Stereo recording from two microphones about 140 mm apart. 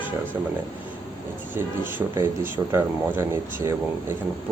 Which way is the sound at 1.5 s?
15° right (ahead or behind).